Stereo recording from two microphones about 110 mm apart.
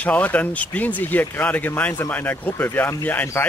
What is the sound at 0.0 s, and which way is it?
Speech, 15° left (ahead or behind).